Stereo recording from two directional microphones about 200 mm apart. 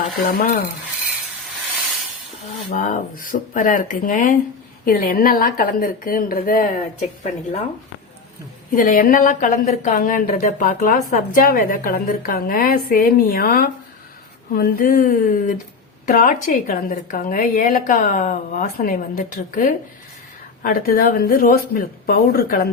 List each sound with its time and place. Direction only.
0.3 s a woman's voice: 45° left (ahead or behind)
2.6 s a woman's voice: 40° left (ahead or behind)
8.7 s a woman's voice: 45° left (ahead or behind)